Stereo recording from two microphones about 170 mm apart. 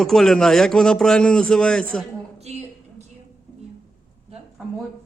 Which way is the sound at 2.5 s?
40° right (ahead or behind).